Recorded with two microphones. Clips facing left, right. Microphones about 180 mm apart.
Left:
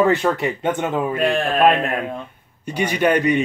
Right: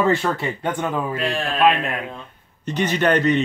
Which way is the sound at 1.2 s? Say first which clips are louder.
Left 3 dB; 50° left (ahead or behind).